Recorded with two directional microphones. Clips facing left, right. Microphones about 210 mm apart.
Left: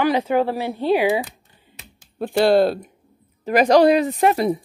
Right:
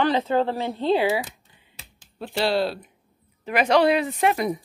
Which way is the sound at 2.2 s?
50° left (ahead or behind).